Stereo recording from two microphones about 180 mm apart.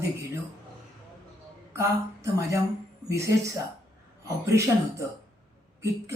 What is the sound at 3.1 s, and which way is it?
Speech, 15° right (ahead or behind).